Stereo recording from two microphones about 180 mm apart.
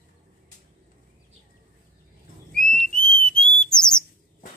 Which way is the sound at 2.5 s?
5° left (ahead or behind).